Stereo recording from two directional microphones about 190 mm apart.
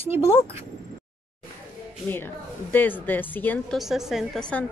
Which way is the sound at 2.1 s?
10° left (ahead or behind).